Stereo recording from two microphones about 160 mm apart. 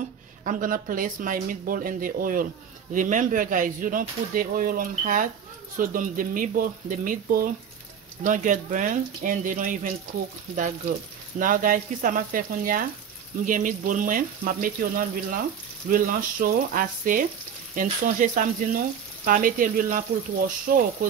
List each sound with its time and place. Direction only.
0.5 s speech: 60° right (ahead or behind)
11.3 s speech: 60° right (ahead or behind)